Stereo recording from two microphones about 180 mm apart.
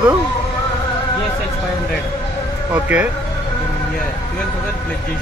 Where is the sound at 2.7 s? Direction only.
10° right (ahead or behind).